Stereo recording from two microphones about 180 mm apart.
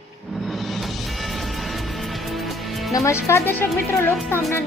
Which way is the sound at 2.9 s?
15° left (ahead or behind).